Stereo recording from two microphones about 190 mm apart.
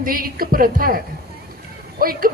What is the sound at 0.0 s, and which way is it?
Speech, 50° right (ahead or behind).